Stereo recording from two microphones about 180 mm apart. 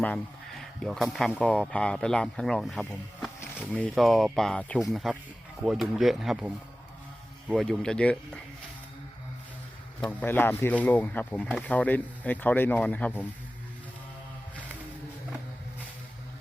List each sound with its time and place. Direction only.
0.8 s speech: centre (ahead or behind)
7.5 s speech: centre (ahead or behind)
10.2 s speech: 10° left (ahead or behind)